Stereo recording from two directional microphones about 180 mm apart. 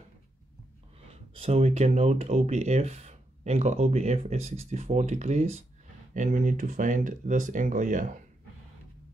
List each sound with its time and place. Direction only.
1.3 s speech: 35° right (ahead or behind)